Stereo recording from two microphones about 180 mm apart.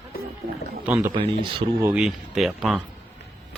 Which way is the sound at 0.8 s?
15° right (ahead or behind).